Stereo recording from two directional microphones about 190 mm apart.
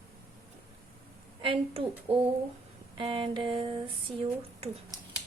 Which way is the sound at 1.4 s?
25° right (ahead or behind).